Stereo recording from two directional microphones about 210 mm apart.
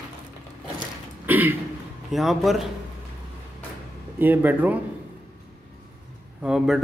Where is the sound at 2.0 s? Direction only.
Centre (ahead or behind).